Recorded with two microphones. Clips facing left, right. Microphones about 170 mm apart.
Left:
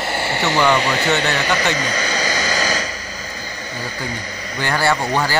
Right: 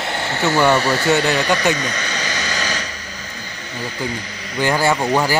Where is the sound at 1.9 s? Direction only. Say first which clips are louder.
Left 4 dB; 35° left (ahead or behind).